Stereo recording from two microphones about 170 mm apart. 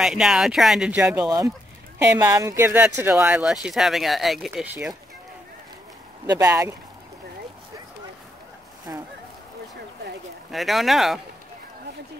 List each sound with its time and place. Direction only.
0.0 s speech: 5° right (ahead or behind)
2.0 s speech: 20° right (ahead or behind)
6.2 s speech: 20° right (ahead or behind)
8.9 s speech: 15° right (ahead or behind)
10.5 s speech: centre (ahead or behind)